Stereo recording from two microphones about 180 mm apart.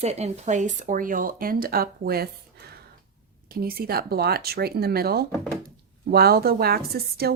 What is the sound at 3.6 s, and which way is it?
Speech, 60° right (ahead or behind).